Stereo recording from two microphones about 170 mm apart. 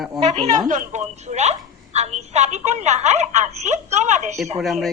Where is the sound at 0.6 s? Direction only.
50° right (ahead or behind).